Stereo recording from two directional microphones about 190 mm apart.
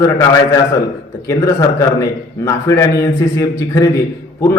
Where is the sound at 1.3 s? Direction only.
15° left (ahead or behind).